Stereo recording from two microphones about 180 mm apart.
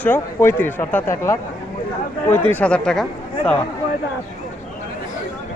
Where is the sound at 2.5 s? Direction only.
5° left (ahead or behind).